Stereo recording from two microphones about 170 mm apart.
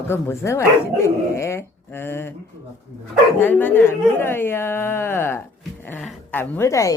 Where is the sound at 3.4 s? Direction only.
10° left (ahead or behind).